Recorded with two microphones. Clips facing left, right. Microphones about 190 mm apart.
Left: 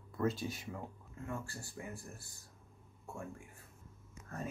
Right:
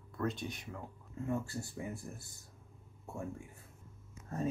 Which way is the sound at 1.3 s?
20° right (ahead or behind).